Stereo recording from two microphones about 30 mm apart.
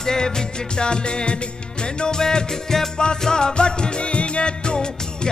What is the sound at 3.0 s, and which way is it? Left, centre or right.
Music, left.